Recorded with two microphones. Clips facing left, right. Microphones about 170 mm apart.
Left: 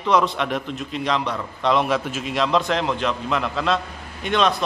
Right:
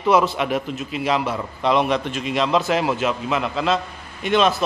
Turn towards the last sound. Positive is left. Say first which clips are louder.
# right 2 dB
turn(degrees=-5)  # may be behind; listen again after turning